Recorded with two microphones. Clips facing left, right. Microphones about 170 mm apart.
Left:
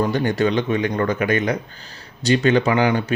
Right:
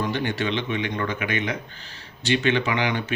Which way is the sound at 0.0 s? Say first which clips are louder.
Left 7 dB; 40° left (ahead or behind).